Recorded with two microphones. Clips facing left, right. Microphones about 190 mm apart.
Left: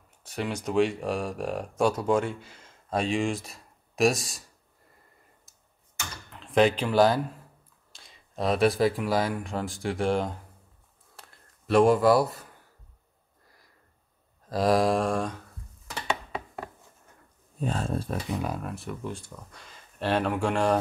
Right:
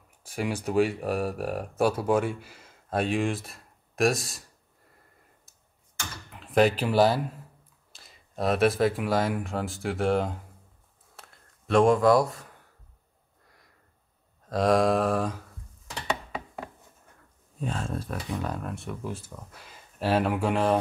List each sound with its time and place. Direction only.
0.2 s speech: 10° right (ahead or behind)
6.3 s speech: 5° right (ahead or behind)
11.1 s a sound: centre (ahead or behind)
14.5 s speech: centre (ahead or behind)
17.6 s speech: 35° left (ahead or behind)
18.3 s speech: 10° left (ahead or behind)